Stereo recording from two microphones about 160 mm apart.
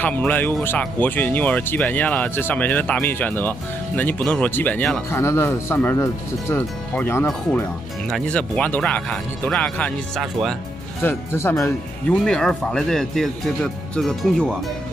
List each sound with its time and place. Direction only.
0.0 s speech: 10° left (ahead or behind)